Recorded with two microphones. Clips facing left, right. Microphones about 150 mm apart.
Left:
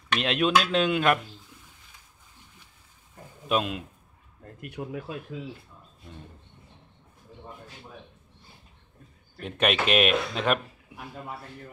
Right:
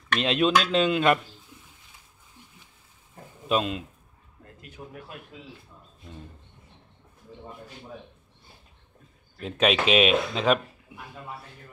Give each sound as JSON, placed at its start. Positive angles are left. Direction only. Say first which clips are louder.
{"t": 0.2, "sound": "speech", "louder": "right 1 dB", "side_deg": 0}
{"t": 3.4, "sound": "speech", "louder": "right 1 dB", "side_deg": 5}
{"t": 4.6, "sound": "speech", "louder": "left 8 dB", "side_deg": 70}
{"t": 9.4, "sound": "speech", "louder": "right 2 dB", "side_deg": 0}